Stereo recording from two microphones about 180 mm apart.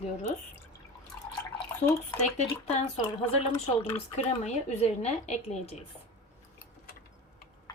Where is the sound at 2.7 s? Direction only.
35° left (ahead or behind).